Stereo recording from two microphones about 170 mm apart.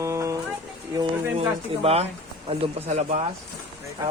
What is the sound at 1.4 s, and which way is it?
A man's voice, 35° right (ahead or behind).